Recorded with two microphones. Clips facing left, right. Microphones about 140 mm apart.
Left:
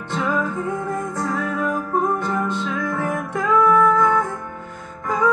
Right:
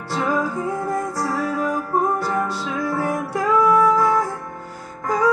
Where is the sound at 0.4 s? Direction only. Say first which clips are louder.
Right 1 dB; 35° right (ahead or behind).